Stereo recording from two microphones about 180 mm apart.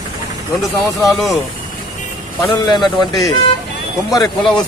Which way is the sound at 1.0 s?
Centre (ahead or behind).